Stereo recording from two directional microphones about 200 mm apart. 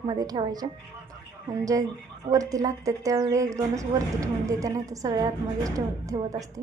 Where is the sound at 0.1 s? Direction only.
20° right (ahead or behind).